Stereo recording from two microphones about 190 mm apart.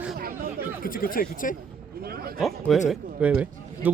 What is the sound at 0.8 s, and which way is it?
Speech, 50° left (ahead or behind).